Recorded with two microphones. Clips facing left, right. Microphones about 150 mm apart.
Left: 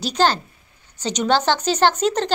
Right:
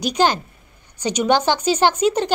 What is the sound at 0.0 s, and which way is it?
A woman's voice, 10° right (ahead or behind).